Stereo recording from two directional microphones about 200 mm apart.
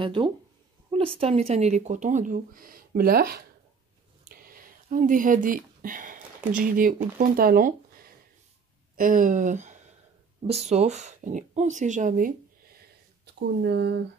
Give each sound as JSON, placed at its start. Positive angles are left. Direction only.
{"t": 0.0, "sound": "speech", "side_deg": -25}
{"t": 13.2, "sound": "speech", "side_deg": -55}